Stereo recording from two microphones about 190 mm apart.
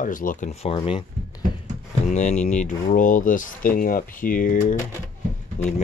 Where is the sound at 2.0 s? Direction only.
40° left (ahead or behind).